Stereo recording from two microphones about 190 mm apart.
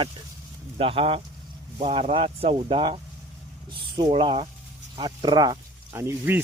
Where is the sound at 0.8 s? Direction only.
30° right (ahead or behind).